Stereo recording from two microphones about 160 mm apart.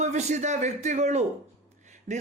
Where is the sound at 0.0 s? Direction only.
45° right (ahead or behind).